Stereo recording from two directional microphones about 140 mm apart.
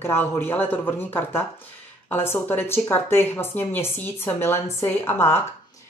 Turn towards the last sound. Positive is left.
turn(degrees=15)  # may be behind; listen again after turning